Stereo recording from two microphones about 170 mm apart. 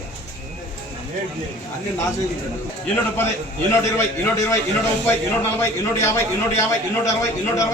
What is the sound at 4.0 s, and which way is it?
Speech, 15° left (ahead or behind).